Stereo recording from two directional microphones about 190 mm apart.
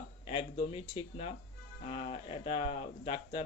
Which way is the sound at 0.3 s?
30° left (ahead or behind).